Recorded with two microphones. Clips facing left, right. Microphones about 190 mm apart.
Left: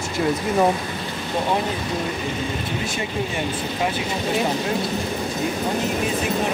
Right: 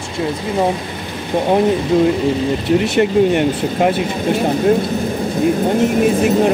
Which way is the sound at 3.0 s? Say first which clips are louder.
Right 14 dB; 65° right (ahead or behind).